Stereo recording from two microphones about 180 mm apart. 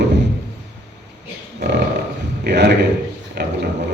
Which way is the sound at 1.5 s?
65° right (ahead or behind).